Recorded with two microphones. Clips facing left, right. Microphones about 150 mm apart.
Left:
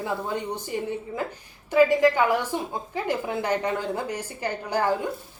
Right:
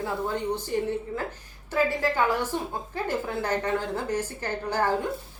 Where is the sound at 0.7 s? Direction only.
10° left (ahead or behind).